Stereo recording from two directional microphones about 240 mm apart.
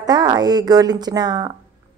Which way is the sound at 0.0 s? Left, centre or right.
Centre.